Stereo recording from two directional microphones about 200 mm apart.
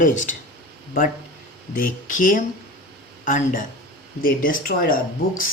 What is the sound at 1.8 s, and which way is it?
Speech, 40° left (ahead or behind).